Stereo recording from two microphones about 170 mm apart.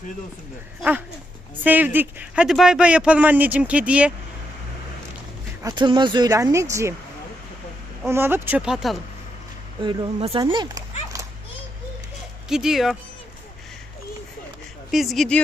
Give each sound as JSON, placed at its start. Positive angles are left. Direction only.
{"t": 1.6, "sound": "speech", "side_deg": -10}
{"t": 5.6, "sound": "a woman's voice", "side_deg": -25}
{"t": 8.0, "sound": "speech", "side_deg": -15}
{"t": 9.8, "sound": "speech", "side_deg": -25}
{"t": 10.4, "sound": "a woman's voice", "side_deg": -25}
{"t": 12.5, "sound": "speech", "side_deg": -5}
{"t": 14.8, "sound": "speech", "side_deg": 0}